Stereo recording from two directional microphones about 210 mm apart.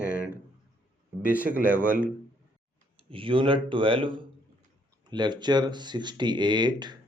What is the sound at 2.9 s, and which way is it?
Speech, 25° right (ahead or behind).